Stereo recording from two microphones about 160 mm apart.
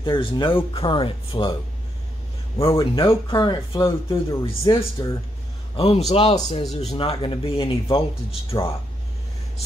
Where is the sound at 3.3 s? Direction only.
25° left (ahead or behind).